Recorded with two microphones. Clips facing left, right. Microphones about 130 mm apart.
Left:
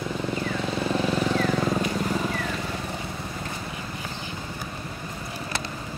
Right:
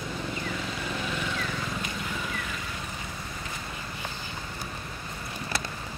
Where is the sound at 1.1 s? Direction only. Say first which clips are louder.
Left 9 dB; 40° left (ahead or behind).